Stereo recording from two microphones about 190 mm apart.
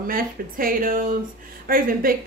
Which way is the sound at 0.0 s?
50° right (ahead or behind).